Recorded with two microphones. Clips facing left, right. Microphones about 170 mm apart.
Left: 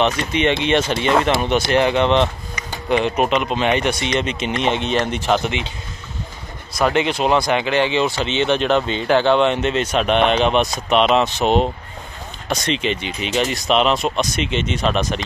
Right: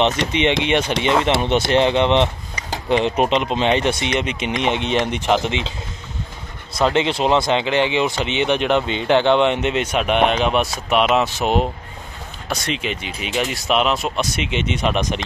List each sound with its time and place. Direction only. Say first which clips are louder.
0.3 s speech: left 1 dB; 20° right (ahead or behind)
4.2 s speech: left 1 dB; 15° right (ahead or behind)
6.7 s speech: even; 25° right (ahead or behind)